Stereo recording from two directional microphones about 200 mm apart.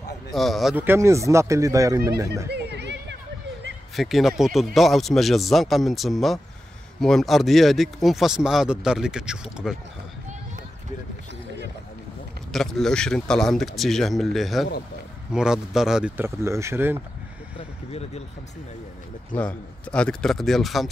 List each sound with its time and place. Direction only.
0.3 s speech: centre (ahead or behind); by 2.4 s 15° right (ahead or behind)
2.5 s a sound: 60° right (ahead or behind)
3.9 s speech: centre (ahead or behind)
12.5 s speech: centre (ahead or behind)
17.6 s vehicle: 30° left (ahead or behind)
19.3 s speech: 5° left (ahead or behind)